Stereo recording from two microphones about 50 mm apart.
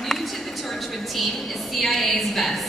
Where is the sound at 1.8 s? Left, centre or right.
Centre.